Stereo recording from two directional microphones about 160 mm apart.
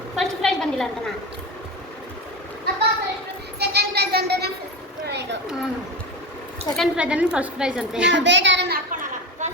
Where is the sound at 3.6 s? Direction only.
85° right.